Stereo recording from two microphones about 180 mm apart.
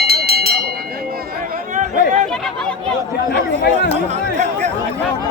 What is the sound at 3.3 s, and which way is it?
Chatter, 60° left (ahead or behind).